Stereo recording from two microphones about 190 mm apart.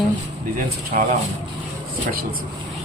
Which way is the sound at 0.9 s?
45° right (ahead or behind).